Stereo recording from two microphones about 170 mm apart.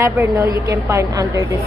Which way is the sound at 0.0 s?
20° right (ahead or behind).